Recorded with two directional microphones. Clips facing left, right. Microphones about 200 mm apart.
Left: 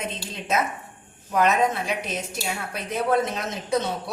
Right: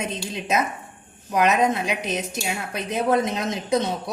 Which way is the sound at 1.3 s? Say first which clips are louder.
Right 1 dB; 15° right (ahead or behind).